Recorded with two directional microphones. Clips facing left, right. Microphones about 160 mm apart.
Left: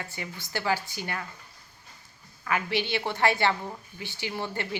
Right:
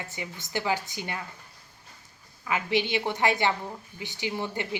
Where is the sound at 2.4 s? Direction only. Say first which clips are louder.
Right 2 dB; 20° right (ahead or behind).